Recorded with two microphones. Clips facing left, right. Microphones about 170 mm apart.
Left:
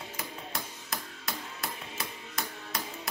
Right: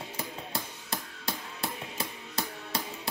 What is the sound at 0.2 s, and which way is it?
Music, 30° right (ahead or behind).